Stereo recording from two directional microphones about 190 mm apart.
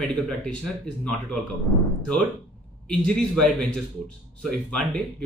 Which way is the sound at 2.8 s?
5° left (ahead or behind).